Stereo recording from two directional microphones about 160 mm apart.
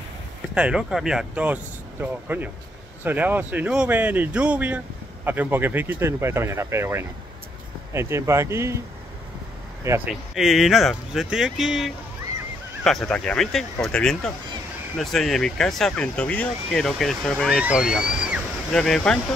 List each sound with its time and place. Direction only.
0.6 s speech: 5° right (ahead or behind)
9.8 s speech: 15° right (ahead or behind)
10.3 s speech: centre (ahead or behind)